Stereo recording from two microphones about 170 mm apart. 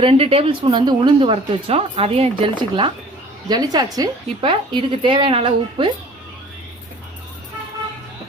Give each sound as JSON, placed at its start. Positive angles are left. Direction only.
{"t": 0.0, "sound": "a woman's voice", "side_deg": -35}